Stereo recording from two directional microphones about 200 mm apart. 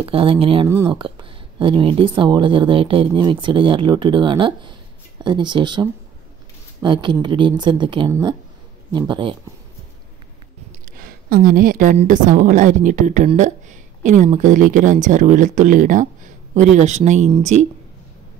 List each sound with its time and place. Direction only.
0.0 s speech: 25° right (ahead or behind)
10.9 s a woman's voice: 45° right (ahead or behind)